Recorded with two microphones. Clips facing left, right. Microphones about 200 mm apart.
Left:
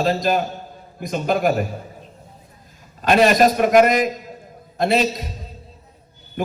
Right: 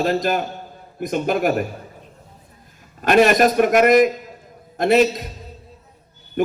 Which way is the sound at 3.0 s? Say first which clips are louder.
Even; 50° right (ahead or behind).